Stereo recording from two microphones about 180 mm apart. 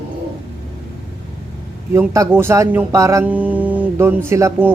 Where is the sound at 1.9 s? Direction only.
15° right (ahead or behind).